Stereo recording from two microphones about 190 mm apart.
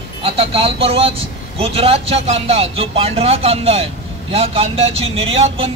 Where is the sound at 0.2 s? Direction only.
30° right (ahead or behind).